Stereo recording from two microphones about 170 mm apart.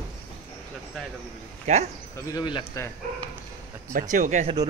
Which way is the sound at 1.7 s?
40° right (ahead or behind).